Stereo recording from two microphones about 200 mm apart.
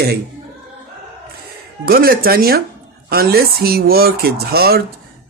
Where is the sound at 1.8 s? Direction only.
45° right (ahead or behind).